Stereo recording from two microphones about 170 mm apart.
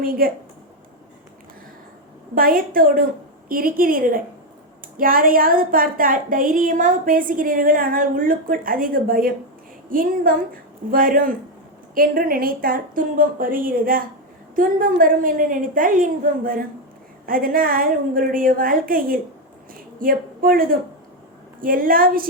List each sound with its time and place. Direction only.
0.0 s a woman's voice: 60° right (ahead or behind)
2.3 s a woman's voice: 55° right (ahead or behind)